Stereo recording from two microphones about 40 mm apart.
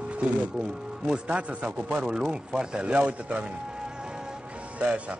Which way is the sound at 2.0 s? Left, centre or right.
Centre.